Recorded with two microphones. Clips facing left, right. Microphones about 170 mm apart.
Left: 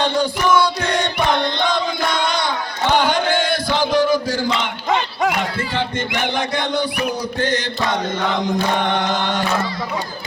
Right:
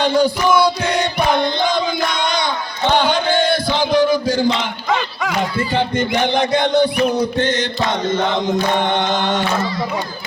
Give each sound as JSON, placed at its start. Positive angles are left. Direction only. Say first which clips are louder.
{"t": 0.0, "sound": "music", "louder": "right 3 dB", "side_deg": -10}
{"t": 2.1, "sound": "crowd", "louder": "right 1 dB", "side_deg": 5}
{"t": 2.9, "sound": "chant", "louder": "right 1 dB", "side_deg": 10}
{"t": 3.8, "sound": "a sound", "louder": "right 1 dB", "side_deg": -15}
{"t": 6.3, "sound": "mantra", "louder": "right 8 dB", "side_deg": -20}